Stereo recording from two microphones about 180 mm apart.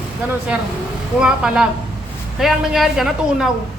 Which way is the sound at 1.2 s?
5° right (ahead or behind).